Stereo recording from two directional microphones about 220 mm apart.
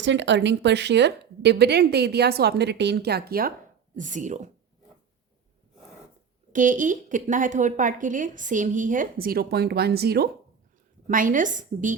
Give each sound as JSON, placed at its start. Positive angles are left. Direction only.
{"t": 0.0, "sound": "a woman's voice", "side_deg": -55}
{"t": 6.5, "sound": "a woman's voice", "side_deg": -35}